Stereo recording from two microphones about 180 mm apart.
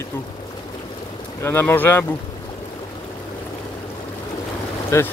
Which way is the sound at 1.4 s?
10° left (ahead or behind).